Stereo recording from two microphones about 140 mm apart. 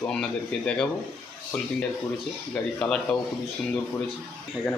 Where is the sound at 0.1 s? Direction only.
5° left (ahead or behind).